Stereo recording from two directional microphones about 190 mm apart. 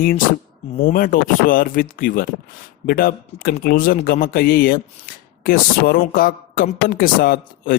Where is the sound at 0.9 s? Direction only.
45° left (ahead or behind).